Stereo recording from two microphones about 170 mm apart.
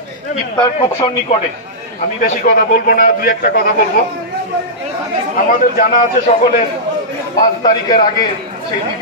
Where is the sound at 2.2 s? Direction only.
55° left (ahead or behind).